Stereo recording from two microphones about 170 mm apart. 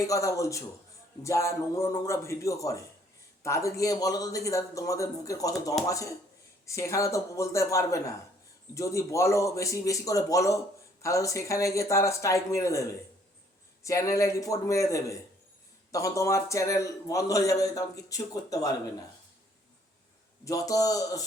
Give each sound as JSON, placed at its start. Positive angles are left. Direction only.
{"t": 0.0, "sound": "a man's voice", "side_deg": 20}
{"t": 20.4, "sound": "a man's voice", "side_deg": 20}